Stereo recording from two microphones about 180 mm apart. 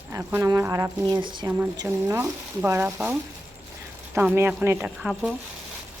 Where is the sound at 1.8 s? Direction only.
15° right (ahead or behind).